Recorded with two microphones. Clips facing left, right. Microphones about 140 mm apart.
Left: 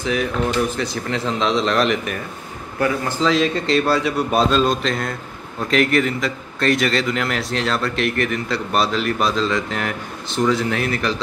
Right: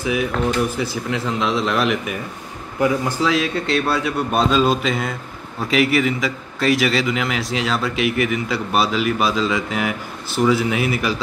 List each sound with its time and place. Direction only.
0.0 s a man's voice: 10° right (ahead or behind)